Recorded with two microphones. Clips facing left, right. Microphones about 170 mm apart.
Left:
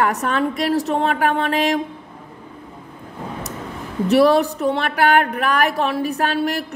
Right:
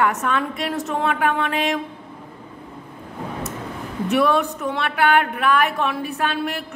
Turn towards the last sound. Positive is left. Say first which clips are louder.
# left 4 dB
turn(degrees=40)  # may be behind; listen again after turning